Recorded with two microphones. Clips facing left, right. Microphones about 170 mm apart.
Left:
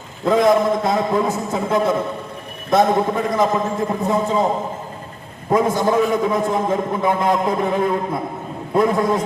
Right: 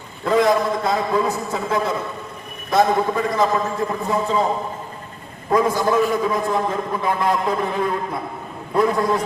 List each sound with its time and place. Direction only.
0.3 s a man's voice: 20° left (ahead or behind)